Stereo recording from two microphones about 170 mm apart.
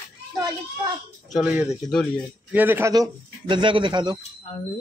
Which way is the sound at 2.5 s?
10° right (ahead or behind).